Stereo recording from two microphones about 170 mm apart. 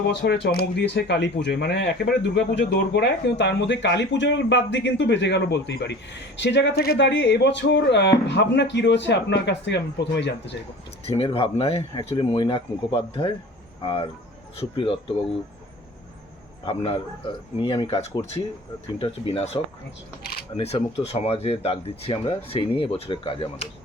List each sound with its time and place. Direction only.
0.1 s speech: 90° left
11.1 s speech: 35° left (ahead or behind)
16.6 s speech: 25° left (ahead or behind)